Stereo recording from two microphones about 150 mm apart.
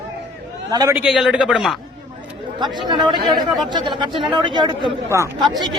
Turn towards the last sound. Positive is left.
turn(degrees=-30)  # may be behind; listen again after turning